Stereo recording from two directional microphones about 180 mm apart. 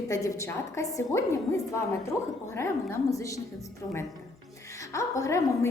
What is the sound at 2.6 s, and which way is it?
Speech, 15° left (ahead or behind).